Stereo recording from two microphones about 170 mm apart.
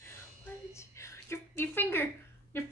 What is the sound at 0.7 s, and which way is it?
A woman's voice, 15° left (ahead or behind).